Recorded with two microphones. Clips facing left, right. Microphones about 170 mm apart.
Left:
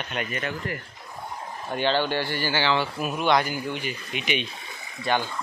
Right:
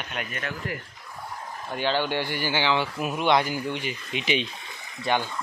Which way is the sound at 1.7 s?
10° right (ahead or behind).